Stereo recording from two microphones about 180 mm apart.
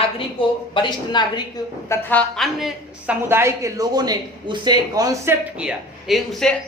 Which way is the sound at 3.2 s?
15° right (ahead or behind).